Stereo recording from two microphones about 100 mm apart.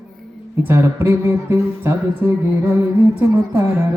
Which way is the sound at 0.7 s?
25° right (ahead or behind).